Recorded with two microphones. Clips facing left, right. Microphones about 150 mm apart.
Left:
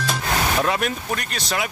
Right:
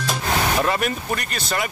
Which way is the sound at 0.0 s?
Centre (ahead or behind).